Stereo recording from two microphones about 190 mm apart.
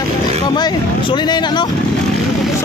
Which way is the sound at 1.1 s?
25° left (ahead or behind).